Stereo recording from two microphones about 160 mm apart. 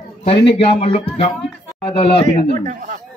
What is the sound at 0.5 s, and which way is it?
Speech, 35° left (ahead or behind).